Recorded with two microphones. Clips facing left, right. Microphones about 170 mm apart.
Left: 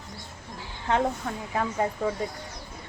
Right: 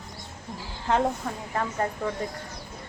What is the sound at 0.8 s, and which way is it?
A woman's voice, centre (ahead or behind).